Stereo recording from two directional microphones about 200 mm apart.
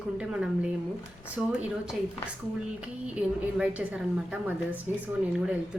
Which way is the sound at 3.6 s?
5° right (ahead or behind).